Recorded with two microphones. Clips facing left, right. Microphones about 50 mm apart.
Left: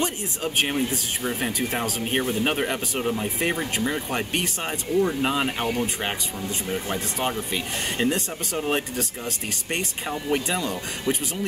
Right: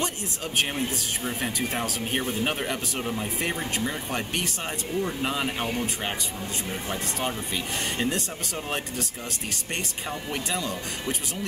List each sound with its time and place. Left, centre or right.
0.0 s speech: centre
6.7 s speech: centre